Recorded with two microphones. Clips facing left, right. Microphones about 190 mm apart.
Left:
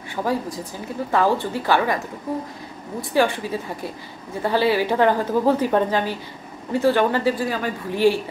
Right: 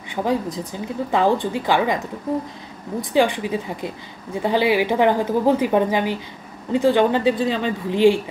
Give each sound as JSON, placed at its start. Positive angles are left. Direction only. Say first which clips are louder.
{"t": 0.1, "sound": "a woman's voice", "louder": "right 2 dB", "side_deg": -20}
{"t": 3.0, "sound": "a woman's voice", "louder": "right 2 dB", "side_deg": -15}